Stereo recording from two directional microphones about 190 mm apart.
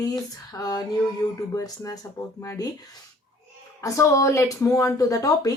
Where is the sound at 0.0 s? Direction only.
20° left (ahead or behind).